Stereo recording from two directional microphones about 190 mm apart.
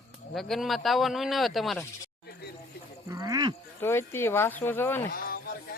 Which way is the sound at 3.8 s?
10° left (ahead or behind).